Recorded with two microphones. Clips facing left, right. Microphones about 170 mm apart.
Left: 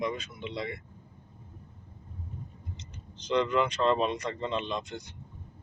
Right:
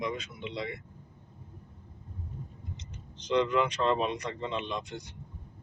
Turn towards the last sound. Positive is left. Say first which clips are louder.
# left 2 dB
turn(degrees=-10)  # may be behind; listen again after turning